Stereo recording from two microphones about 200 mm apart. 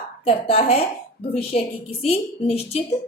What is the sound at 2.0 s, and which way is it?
Speech, 30° left (ahead or behind).